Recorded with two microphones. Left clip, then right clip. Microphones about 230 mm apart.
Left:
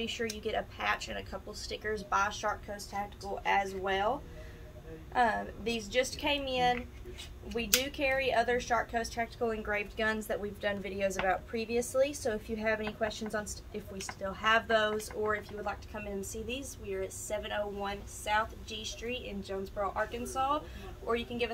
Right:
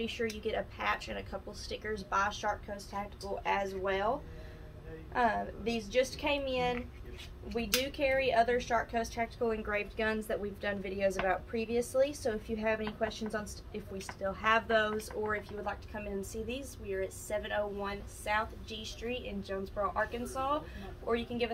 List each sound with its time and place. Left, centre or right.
0.0 s speech: centre
5.1 s speech: centre